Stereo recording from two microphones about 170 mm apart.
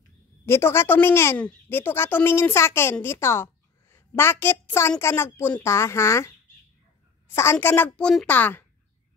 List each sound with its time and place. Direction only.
0.5 s a woman's voice: 15° left (ahead or behind)